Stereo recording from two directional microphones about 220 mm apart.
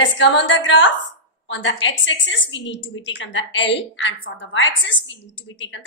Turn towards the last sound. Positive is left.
turn(degrees=60)  # may be behind; listen again after turning